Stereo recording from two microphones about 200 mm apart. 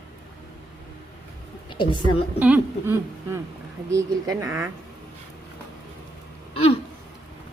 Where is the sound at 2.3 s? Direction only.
10° right (ahead or behind).